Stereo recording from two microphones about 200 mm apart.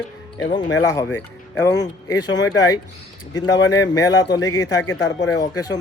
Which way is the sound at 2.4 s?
20° left (ahead or behind).